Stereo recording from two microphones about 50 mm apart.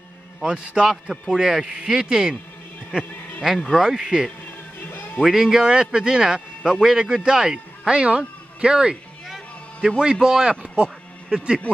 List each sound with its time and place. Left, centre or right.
0.4 s speech: centre
3.8 s speech: centre
4.9 s music: left
5.2 s a man's voice: centre